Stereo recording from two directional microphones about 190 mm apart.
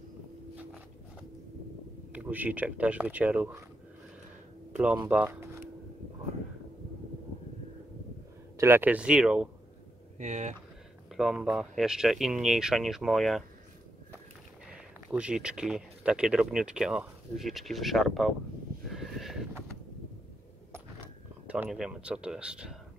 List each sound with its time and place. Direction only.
2.1 s speech: 10° right (ahead or behind)
5.0 s speech: 10° right (ahead or behind)
8.5 s speech: 10° right (ahead or behind)
10.1 s speech: 35° right (ahead or behind)
11.1 s speech: 5° right (ahead or behind)
14.7 s speech: 5° right (ahead or behind)
18.9 s a sound: centre (ahead or behind)
21.5 s speech: 5° right (ahead or behind)